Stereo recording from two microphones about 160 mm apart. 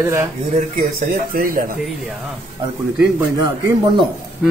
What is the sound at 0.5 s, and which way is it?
Speech, 50° right (ahead or behind).